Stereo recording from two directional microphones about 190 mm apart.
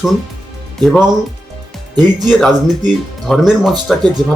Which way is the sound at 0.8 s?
Centre (ahead or behind).